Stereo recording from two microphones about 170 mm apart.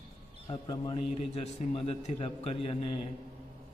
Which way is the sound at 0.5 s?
30° left (ahead or behind).